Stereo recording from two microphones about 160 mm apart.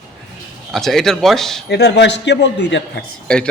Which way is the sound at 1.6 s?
90° left.